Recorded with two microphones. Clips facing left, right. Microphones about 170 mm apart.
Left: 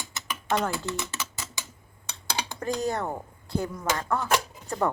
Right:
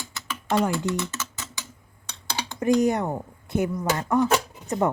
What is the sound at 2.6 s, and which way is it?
A woman's voice, 20° right (ahead or behind).